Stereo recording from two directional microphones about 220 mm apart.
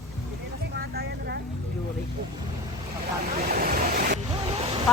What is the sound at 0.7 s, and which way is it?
Vehicle, 45° right (ahead or behind).